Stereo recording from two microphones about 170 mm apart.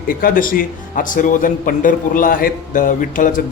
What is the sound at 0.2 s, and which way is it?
A man's voice, 55° left (ahead or behind).